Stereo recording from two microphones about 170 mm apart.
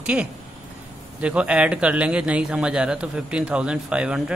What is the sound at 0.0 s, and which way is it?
A man's voice, 5° right (ahead or behind).